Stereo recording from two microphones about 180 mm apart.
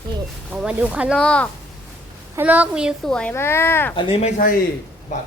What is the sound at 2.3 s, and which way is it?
Speech, 10° right (ahead or behind).